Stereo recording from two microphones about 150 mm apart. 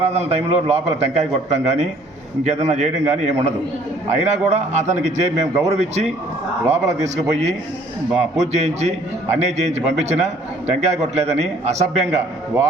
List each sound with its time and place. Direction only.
0.0 s a man's voice: 45° right (ahead or behind)